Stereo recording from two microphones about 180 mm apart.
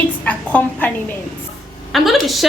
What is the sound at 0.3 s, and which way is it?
A woman's voice, 10° left (ahead or behind).